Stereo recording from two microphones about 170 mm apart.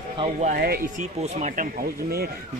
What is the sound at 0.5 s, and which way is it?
Speech, 65° right (ahead or behind).